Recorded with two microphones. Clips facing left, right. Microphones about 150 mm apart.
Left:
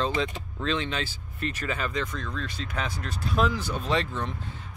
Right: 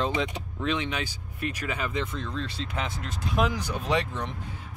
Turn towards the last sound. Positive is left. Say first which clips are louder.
# even
turn(degrees=-15)  # may be behind; listen again after turning